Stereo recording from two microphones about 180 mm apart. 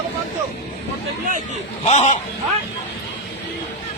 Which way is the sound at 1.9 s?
40° left (ahead or behind).